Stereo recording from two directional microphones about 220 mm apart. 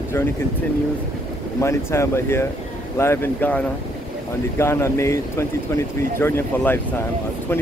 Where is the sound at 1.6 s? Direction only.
10° left (ahead or behind).